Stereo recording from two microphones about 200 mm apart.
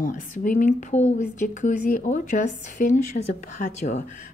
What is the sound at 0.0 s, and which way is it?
Speech, 40° left (ahead or behind).